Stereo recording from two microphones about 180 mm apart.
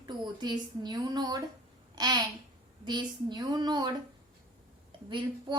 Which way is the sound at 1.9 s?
20° right (ahead or behind).